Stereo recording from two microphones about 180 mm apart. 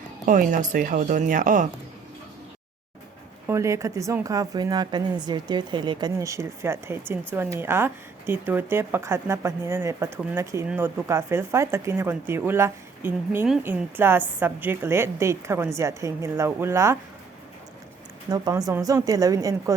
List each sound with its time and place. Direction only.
0.3 s speech: 50° right (ahead or behind)
3.4 s speech: 15° right (ahead or behind)
18.3 s speech: 20° right (ahead or behind)